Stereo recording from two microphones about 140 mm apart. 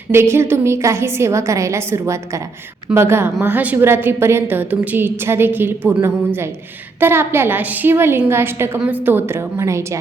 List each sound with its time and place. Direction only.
0.1 s a woman's voice: 20° right (ahead or behind)